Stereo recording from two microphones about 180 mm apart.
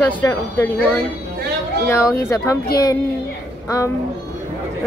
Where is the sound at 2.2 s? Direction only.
15° left (ahead or behind).